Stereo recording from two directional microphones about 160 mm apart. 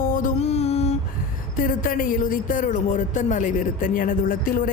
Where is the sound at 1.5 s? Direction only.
60° left (ahead or behind).